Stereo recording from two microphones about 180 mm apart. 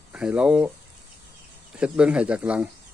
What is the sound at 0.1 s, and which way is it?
Speech, 5° right (ahead or behind).